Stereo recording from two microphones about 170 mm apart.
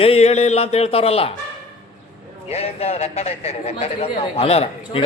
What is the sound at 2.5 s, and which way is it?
A man's voice, 35° left (ahead or behind).